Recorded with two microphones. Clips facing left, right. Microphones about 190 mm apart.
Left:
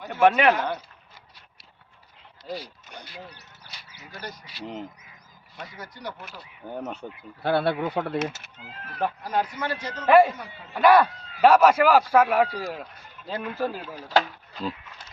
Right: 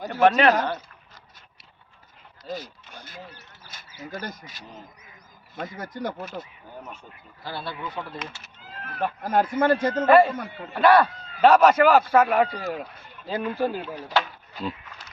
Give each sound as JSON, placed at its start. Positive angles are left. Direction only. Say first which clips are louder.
{"t": 0.1, "sound": "a man's voice", "louder": "even", "side_deg": 15}
{"t": 3.7, "sound": "a man's voice", "louder": "right 9 dB", "side_deg": -50}
{"t": 6.7, "sound": "speech", "louder": "left 7 dB", "side_deg": 65}
{"t": 9.2, "sound": "a man's voice", "louder": "right 6 dB", "side_deg": -50}
{"t": 10.1, "sound": "a man's voice", "louder": "even", "side_deg": 10}
{"t": 10.3, "sound": "a man's voice", "louder": "right 7 dB", "side_deg": -55}
{"t": 10.8, "sound": "a man's voice", "louder": "even", "side_deg": 10}
{"t": 13.8, "sound": "speech", "louder": "left 2 dB", "side_deg": 40}